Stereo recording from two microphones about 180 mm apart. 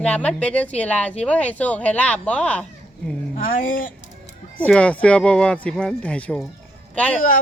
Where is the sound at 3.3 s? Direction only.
50° left (ahead or behind).